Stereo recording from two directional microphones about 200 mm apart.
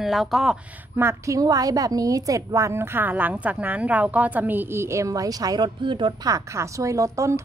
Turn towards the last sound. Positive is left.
turn(degrees=-15)  # may be behind; listen again after turning